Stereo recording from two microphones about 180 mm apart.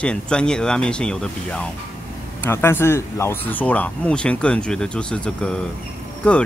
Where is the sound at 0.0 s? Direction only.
5° left (ahead or behind).